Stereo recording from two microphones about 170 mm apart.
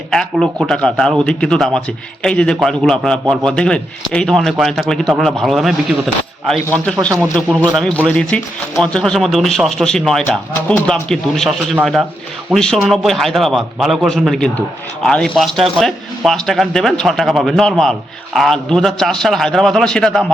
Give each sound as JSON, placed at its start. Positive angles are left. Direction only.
{"t": 0.1, "sound": "a man's voice", "side_deg": 5}
{"t": 6.7, "sound": "a man's voice", "side_deg": 5}